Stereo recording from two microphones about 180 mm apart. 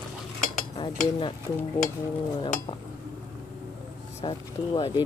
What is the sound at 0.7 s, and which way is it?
Cutlery, 30° left (ahead or behind).